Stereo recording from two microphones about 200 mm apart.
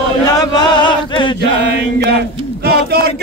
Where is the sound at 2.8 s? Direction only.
50° right (ahead or behind).